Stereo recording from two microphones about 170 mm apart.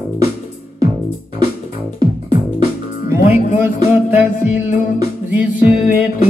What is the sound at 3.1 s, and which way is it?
Music, 15° right (ahead or behind).